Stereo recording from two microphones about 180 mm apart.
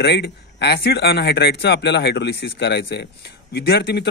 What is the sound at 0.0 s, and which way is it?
A man's voice, 65° left (ahead or behind).